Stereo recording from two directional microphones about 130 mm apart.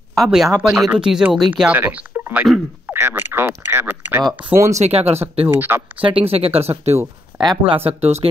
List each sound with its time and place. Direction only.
0.1 s speech: centre (ahead or behind); by 4.7 s 20° right (ahead or behind)
4.7 s speech: 55° right (ahead or behind)
5.5 s speech: 15° right (ahead or behind)
6.0 s speech: 45° right (ahead or behind)